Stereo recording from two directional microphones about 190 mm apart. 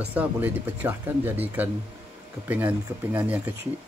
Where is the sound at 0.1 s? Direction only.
10° right (ahead or behind).